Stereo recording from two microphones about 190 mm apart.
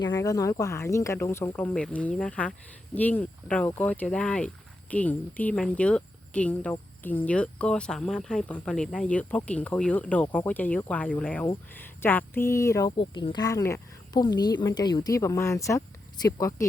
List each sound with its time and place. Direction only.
0.0 s speech: 20° left (ahead or behind)